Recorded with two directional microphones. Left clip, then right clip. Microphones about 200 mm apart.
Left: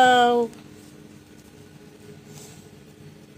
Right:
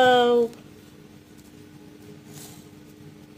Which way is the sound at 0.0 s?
10° left (ahead or behind).